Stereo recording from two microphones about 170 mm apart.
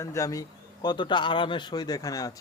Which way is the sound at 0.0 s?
20° left (ahead or behind).